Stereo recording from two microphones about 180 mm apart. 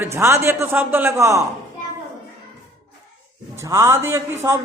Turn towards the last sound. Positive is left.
turn(degrees=-15)  # may be behind; listen again after turning